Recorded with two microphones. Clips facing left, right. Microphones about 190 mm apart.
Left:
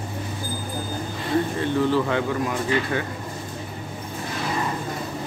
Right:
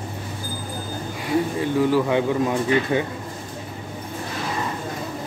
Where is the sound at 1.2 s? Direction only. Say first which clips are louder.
Right 1 dB; 10° right (ahead or behind).